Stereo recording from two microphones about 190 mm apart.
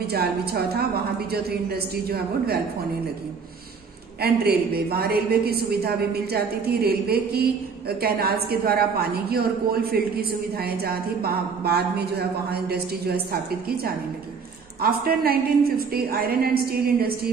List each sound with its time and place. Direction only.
0.0 s a woman's voice: 55° right (ahead or behind)
4.2 s a woman's voice: 55° right (ahead or behind)
14.8 s a woman's voice: 50° right (ahead or behind)